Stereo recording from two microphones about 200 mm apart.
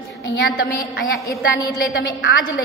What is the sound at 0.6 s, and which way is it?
Speech, 50° left (ahead or behind).